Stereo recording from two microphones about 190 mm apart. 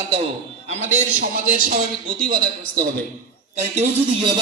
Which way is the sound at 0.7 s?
40° right (ahead or behind).